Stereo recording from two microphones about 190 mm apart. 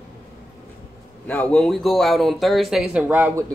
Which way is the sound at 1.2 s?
5° left (ahead or behind).